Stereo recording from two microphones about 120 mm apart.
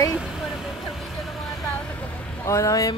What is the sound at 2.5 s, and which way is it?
Speech, 25° left (ahead or behind).